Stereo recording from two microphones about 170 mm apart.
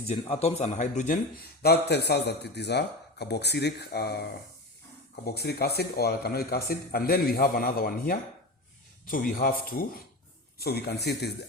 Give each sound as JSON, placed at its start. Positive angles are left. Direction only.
{"t": 0.1, "sound": "speech", "side_deg": 35}
{"t": 1.6, "sound": "a man's voice", "side_deg": 70}
{"t": 9.4, "sound": "a man's voice", "side_deg": 60}